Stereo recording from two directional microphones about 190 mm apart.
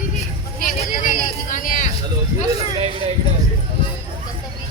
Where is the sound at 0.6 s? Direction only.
45° left (ahead or behind).